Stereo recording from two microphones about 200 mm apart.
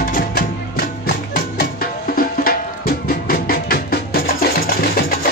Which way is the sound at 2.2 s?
45° left (ahead or behind).